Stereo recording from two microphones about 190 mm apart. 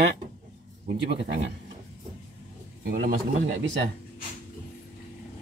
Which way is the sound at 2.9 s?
50° right (ahead or behind).